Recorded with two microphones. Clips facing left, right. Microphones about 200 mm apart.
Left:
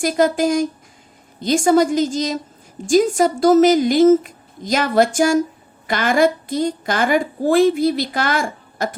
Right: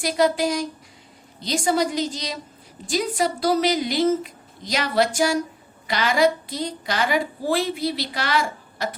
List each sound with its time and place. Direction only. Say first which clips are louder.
0.0 s a woman's voice: left 4 dB; 50° left (ahead or behind)